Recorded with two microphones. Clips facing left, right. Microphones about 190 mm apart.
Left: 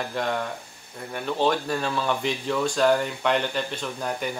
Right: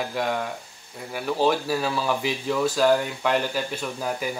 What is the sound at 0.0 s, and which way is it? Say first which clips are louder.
Speech: right 1 dB; 5° right (ahead or behind).